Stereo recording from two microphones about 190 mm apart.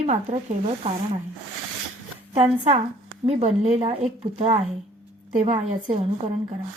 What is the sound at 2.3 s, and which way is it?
A woman's voice, 30° right (ahead or behind).